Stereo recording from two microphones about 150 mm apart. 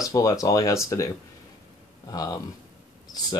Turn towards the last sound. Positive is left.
turn(degrees=25)  # may be behind; listen again after turning